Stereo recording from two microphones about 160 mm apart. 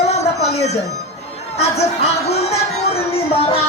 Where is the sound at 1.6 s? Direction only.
40° left (ahead or behind).